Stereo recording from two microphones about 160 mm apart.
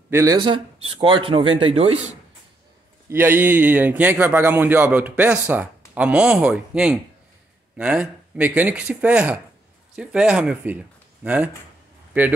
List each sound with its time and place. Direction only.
0.1 s speech: 20° right (ahead or behind)
0.4 s speech: 35° right (ahead or behind)
3.1 s a man's voice: 15° right (ahead or behind)